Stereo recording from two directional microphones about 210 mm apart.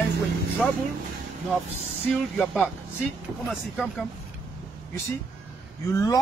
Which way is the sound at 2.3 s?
Centre (ahead or behind).